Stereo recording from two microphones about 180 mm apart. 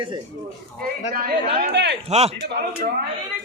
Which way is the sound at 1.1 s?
50° right (ahead or behind).